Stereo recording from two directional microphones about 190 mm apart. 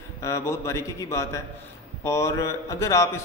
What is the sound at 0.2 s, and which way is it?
A man's voice, 15° left (ahead or behind).